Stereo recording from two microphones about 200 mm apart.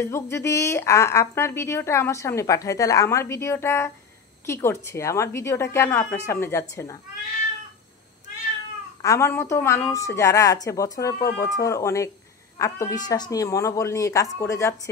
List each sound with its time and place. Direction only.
0.0 s a woman's voice: 15° left (ahead or behind)
9.0 s a woman's voice: 15° left (ahead or behind)